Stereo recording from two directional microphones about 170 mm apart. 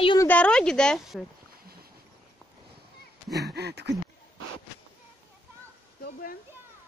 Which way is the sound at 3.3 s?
75° right (ahead or behind).